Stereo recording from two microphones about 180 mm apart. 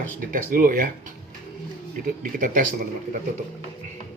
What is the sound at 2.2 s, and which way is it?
Speech, 50° right (ahead or behind).